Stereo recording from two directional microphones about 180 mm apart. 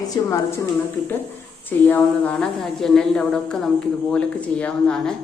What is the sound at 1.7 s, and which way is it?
A woman's voice, 10° left (ahead or behind).